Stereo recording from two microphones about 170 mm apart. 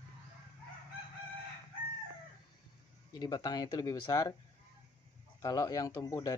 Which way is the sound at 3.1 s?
25° left (ahead or behind).